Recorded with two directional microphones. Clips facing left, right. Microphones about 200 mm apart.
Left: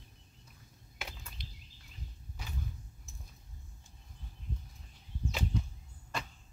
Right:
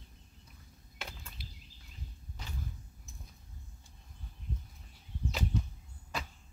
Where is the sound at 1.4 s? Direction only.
5° right (ahead or behind).